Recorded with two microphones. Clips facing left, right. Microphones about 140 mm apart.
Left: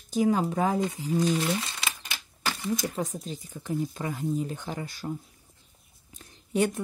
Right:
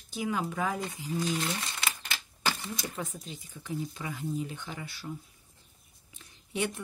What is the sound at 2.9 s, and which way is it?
Speech, 35° left (ahead or behind).